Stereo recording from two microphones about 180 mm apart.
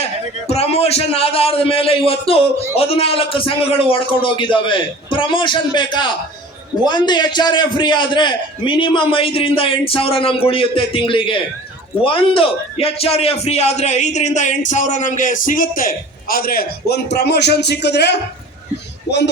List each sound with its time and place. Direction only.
0.0 s a man's voice: 35° left (ahead or behind); by 18.2 s 70° left (ahead or behind)